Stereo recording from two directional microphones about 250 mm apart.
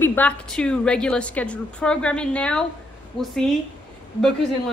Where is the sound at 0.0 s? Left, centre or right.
Centre.